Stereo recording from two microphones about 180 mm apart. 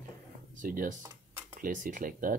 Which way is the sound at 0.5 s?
50° right (ahead or behind).